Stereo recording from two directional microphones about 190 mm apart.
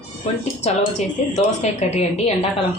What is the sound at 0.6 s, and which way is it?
Speech, 35° left (ahead or behind).